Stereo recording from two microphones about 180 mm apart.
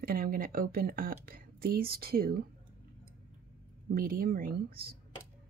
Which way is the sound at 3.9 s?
50° right (ahead or behind).